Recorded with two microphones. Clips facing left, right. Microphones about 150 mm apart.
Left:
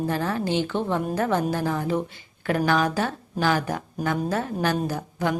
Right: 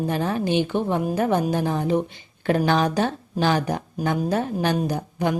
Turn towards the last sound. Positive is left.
turn(degrees=-20)  # may be behind; listen again after turning